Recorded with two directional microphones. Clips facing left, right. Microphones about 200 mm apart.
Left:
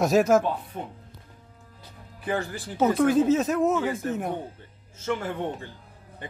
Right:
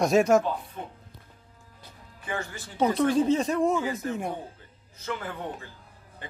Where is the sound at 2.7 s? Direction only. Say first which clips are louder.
Left 2 dB; 5° left (ahead or behind).